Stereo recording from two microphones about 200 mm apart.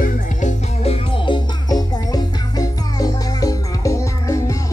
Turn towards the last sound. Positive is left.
turn(degrees=15)  # may be behind; listen again after turning